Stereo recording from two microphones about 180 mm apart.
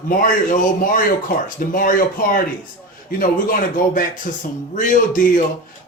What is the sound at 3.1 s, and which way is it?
A man's voice, 50° left (ahead or behind).